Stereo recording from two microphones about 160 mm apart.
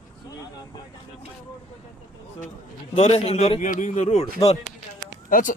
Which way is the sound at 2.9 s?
40° left (ahead or behind).